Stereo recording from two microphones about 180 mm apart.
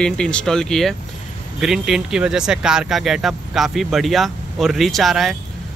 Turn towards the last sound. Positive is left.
turn(degrees=0)  # may be behind; listen again after turning